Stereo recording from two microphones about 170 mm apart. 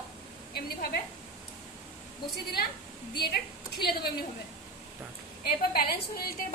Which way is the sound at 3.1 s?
70° left (ahead or behind).